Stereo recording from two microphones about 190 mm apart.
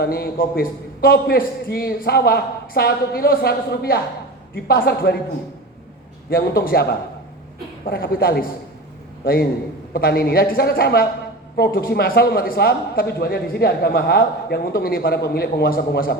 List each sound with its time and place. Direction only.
0.0 s a man's voice: 50° left (ahead or behind)
6.3 s a man's voice: 50° left (ahead or behind)
7.9 s a man's voice: 50° left (ahead or behind)